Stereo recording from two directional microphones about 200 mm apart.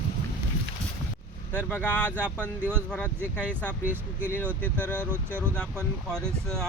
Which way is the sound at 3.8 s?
10° right (ahead or behind).